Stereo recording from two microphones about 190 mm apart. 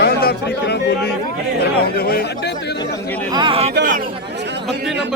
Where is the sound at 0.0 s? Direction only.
55° left (ahead or behind).